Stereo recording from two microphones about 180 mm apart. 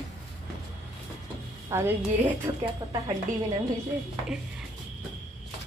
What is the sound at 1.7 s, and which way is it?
Speech, 15° right (ahead or behind).